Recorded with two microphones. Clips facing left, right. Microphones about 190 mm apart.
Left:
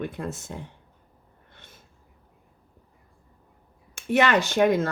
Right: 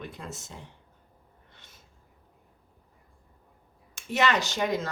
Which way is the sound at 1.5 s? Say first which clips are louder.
Left 6 dB; 55° left (ahead or behind).